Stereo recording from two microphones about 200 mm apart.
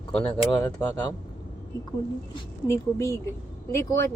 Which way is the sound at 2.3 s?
15° left (ahead or behind).